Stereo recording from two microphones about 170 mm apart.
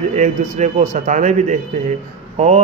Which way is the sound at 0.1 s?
45° right (ahead or behind).